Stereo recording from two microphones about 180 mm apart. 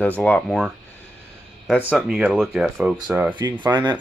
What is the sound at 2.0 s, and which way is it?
Speech, 5° right (ahead or behind).